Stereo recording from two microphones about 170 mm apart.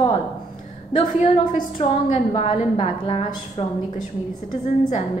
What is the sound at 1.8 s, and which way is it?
A woman's voice, 35° left (ahead or behind).